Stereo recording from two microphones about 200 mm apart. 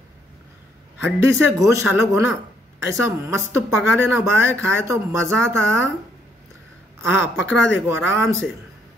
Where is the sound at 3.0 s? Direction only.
15° right (ahead or behind).